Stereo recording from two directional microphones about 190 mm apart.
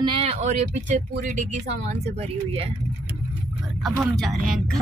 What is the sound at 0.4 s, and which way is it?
Speech, 40° right (ahead or behind).